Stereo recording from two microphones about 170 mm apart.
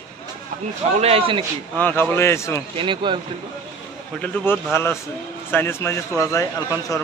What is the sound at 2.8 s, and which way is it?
Speech, 30° right (ahead or behind).